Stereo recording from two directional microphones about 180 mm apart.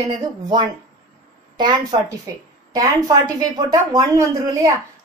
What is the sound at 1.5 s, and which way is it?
Speech, 25° right (ahead or behind).